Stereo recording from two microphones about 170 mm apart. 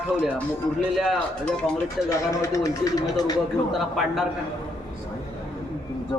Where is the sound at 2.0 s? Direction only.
20° left (ahead or behind).